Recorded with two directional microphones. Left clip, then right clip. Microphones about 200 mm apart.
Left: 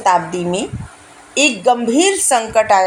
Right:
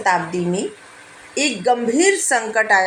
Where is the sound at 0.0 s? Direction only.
45° left (ahead or behind).